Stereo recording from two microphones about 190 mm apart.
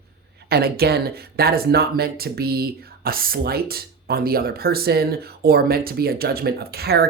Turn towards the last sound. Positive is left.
turn(degrees=-55)  # may be behind; listen again after turning